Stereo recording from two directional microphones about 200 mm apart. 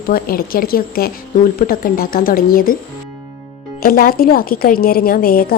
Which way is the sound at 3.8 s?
50° left (ahead or behind).